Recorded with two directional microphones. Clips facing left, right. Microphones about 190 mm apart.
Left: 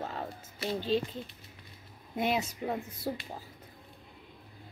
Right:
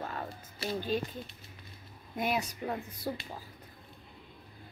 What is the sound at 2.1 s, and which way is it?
Speech, 25° left (ahead or behind).